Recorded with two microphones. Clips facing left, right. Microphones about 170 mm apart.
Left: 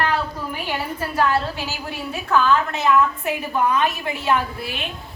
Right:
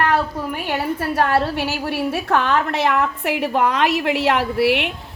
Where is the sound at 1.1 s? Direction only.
65° right (ahead or behind).